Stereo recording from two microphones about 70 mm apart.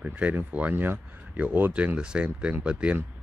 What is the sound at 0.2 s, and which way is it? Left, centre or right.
Speech, centre.